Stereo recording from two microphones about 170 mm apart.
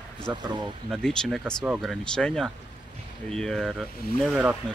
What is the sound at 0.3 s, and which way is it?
Speech, 25° right (ahead or behind).